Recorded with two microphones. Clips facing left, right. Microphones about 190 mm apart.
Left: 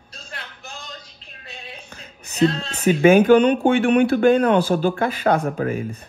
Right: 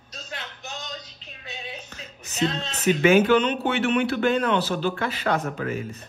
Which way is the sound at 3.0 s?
50° left (ahead or behind).